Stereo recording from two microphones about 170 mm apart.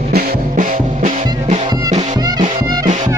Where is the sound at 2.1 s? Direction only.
20° right (ahead or behind).